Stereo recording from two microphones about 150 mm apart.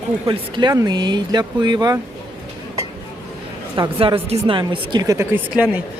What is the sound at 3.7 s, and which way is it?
Speech, 30° right (ahead or behind).